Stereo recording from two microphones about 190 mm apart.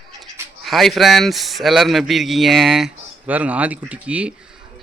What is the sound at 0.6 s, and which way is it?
A man's voice, centre (ahead or behind).